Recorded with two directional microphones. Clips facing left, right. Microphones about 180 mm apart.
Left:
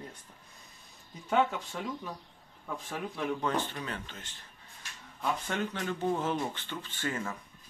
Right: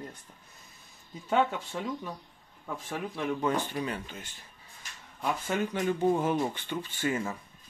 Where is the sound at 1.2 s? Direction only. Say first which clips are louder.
Right 1 dB; 5° right (ahead or behind).